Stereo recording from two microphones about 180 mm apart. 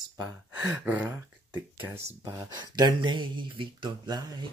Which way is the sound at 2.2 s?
15° right (ahead or behind).